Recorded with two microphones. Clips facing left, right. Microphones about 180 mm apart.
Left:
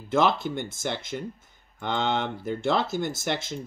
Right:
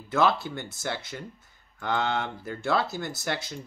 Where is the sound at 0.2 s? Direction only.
20° left (ahead or behind).